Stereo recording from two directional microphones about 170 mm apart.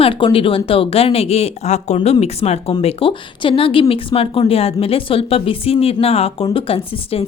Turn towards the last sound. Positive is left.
turn(degrees=30)  # may be behind; listen again after turning